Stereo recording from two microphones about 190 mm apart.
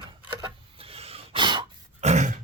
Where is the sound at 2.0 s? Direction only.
35° right (ahead or behind).